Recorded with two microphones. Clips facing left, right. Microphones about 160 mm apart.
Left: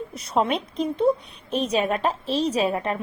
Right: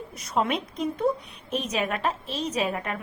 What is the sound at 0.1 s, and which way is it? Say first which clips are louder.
A woman's voice: left 3 dB; 30° left (ahead or behind).